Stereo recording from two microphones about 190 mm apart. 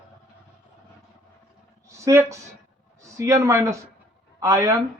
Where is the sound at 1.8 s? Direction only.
15° right (ahead or behind).